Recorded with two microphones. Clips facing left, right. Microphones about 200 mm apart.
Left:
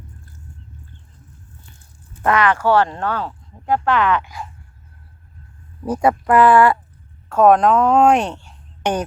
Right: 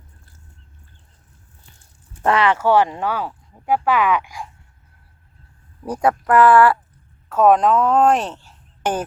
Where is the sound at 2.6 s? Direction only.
15° right (ahead or behind).